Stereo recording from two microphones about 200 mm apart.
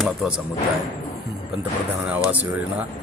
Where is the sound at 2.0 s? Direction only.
5° right (ahead or behind).